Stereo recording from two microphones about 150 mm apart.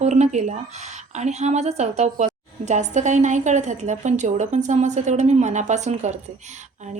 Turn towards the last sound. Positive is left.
turn(degrees=-50)  # may be behind; listen again after turning